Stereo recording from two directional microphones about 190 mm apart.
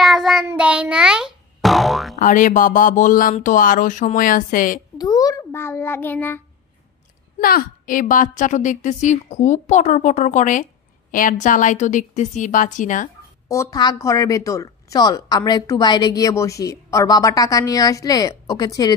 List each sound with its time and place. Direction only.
0.0 s child singing: centre (ahead or behind)
0.5 s a child's voice: 5° right (ahead or behind)
2.1 s speech: 45° left (ahead or behind)
4.9 s a child's voice: 20° left (ahead or behind)
7.3 s a woman's voice: 50° left (ahead or behind)
13.5 s a woman's voice: 15° left (ahead or behind)